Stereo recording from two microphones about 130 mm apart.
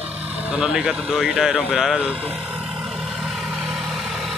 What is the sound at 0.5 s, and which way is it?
Speech, 5° right (ahead or behind).